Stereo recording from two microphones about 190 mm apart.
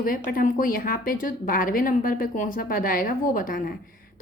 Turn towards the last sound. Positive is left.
turn(degrees=45)  # may be behind; listen again after turning